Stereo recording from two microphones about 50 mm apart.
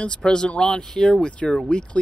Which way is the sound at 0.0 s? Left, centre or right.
Centre.